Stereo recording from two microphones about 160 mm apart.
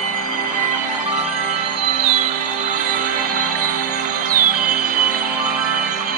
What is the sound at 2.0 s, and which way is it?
Music, 50° right (ahead or behind).